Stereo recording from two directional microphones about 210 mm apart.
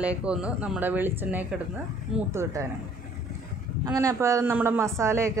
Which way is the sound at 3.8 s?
15° right (ahead or behind).